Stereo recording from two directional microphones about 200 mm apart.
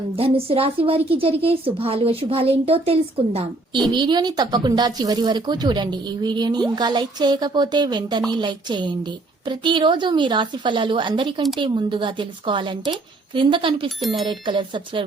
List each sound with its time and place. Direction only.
0.3 s speech: 30° right (ahead or behind)